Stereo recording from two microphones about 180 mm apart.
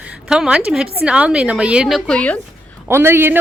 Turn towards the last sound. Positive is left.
turn(degrees=-10)  # may be behind; listen again after turning